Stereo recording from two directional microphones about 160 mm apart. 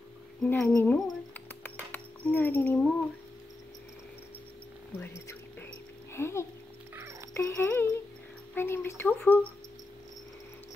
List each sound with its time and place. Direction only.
0.4 s speech: 10° left (ahead or behind)
1.6 s a sound: 10° left (ahead or behind)
4.9 s music: 15° left (ahead or behind)
7.0 s music: 20° right (ahead or behind)
7.3 s speech: 15° left (ahead or behind)